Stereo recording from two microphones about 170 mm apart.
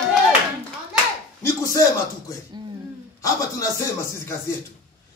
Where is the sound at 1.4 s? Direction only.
20° left (ahead or behind).